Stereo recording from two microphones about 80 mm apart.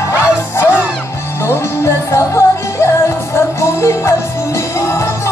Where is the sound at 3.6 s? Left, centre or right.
Left.